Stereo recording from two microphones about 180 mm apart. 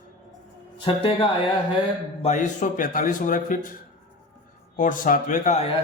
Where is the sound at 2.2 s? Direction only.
45° left (ahead or behind).